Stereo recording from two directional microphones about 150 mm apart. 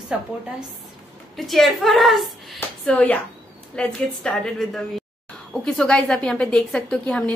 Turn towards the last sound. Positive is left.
turn(degrees=5)  # may be behind; listen again after turning